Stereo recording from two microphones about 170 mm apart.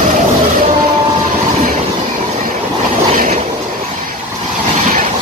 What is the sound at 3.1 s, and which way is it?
Train, 45° right (ahead or behind).